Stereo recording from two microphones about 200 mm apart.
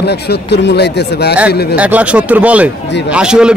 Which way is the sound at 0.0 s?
55° left (ahead or behind).